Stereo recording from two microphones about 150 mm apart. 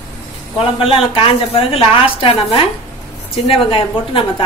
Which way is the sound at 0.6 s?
40° left (ahead or behind).